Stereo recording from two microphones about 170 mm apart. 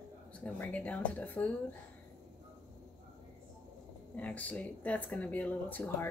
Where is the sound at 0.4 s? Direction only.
10° left (ahead or behind).